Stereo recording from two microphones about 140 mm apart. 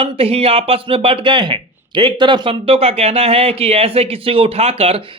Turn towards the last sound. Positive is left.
turn(degrees=-45)  # may be behind; listen again after turning